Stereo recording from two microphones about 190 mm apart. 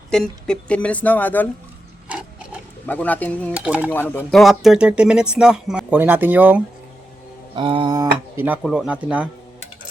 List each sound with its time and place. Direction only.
0.1 s speech: 5° left (ahead or behind)
2.0 s ratchet: 5° right (ahead or behind)
2.8 s speech: 10° left (ahead or behind)
3.5 s speech: 5° right (ahead or behind)
4.1 s speech: 5° left (ahead or behind); by 6.6 s 10° right (ahead or behind)
7.5 s a sound: 25° right (ahead or behind)
8.4 s speech: 5° right (ahead or behind)